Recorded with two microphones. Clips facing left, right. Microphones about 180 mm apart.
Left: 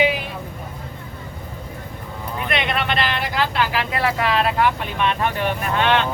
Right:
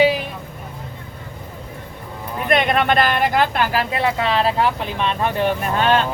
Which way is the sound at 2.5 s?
45° right (ahead or behind).